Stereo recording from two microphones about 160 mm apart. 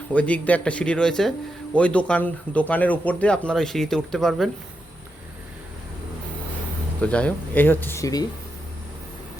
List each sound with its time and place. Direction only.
0.1 s speech: 10° left (ahead or behind)
7.0 s speech: 10° left (ahead or behind)